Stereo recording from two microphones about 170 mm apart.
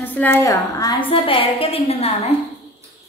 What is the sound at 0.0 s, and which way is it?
Speech, 10° left (ahead or behind).